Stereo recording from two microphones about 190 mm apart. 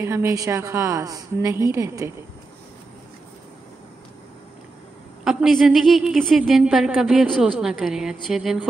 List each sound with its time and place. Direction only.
0.0 s a woman's voice: 15° right (ahead or behind)
5.2 s a woman's voice: centre (ahead or behind)